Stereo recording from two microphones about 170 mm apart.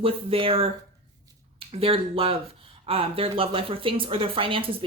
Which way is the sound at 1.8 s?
35° right (ahead or behind).